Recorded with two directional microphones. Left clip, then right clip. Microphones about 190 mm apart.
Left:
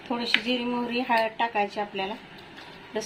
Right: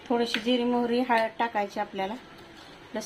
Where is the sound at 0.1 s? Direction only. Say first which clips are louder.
Even; 5° right (ahead or behind).